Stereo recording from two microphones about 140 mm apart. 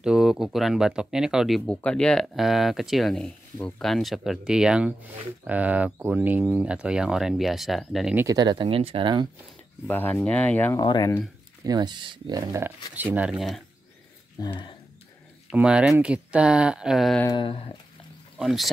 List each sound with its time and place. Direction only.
0.0 s speech: 5° right (ahead or behind)
1.7 s speech: 5° left (ahead or behind)
8.4 s speech: 35° right (ahead or behind)
9.8 s speech: 15° left (ahead or behind)
10.8 s speech: 30° left (ahead or behind)
11.6 s speech: 30° right (ahead or behind)
12.6 s speech: 15° right (ahead or behind)
14.4 s speech: 35° left (ahead or behind)
15.5 s speech: 5° right (ahead or behind)
17.3 s speech: 40° left (ahead or behind)
18.4 s speech: centre (ahead or behind)